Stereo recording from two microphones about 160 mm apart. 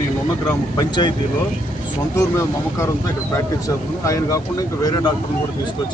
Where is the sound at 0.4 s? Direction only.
25° left (ahead or behind).